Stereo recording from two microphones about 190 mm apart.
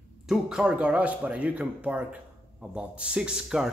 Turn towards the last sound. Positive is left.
turn(degrees=-5)  # may be behind; listen again after turning